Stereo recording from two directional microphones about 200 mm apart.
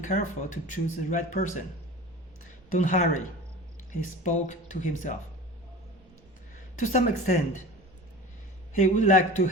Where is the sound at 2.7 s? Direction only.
35° left (ahead or behind).